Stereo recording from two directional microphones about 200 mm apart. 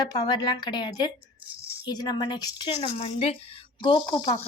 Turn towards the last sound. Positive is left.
turn(degrees=20)  # may be behind; listen again after turning